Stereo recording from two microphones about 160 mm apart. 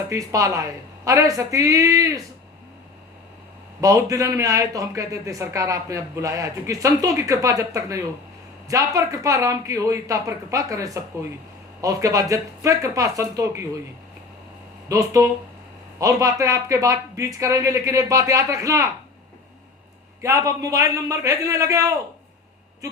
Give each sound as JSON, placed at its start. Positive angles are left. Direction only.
{"t": 0.1, "sound": "speech", "side_deg": -20}
{"t": 3.8, "sound": "speech", "side_deg": -20}
{"t": 14.8, "sound": "speech", "side_deg": -20}
{"t": 20.2, "sound": "speech", "side_deg": -20}